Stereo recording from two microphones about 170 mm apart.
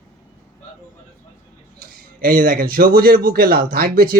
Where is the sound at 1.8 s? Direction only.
55° right (ahead or behind).